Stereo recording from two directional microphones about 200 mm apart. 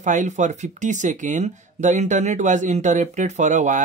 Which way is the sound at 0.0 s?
40° right (ahead or behind).